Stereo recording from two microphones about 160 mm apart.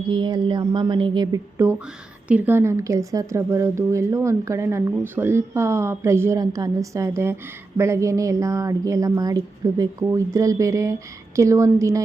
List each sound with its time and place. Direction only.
0.1 s a woman's voice: 30° right (ahead or behind)